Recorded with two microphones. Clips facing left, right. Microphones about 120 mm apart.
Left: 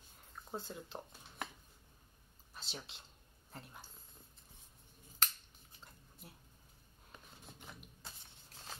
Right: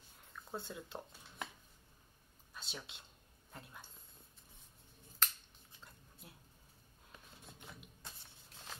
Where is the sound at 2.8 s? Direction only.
30° left (ahead or behind).